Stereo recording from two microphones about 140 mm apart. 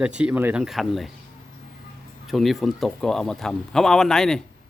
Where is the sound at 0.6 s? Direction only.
Centre (ahead or behind).